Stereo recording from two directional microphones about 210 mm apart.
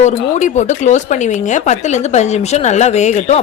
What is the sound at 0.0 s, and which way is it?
A woman's voice, 35° left (ahead or behind).